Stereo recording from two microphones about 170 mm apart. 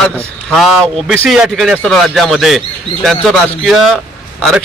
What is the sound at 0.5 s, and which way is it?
A man's voice, centre (ahead or behind).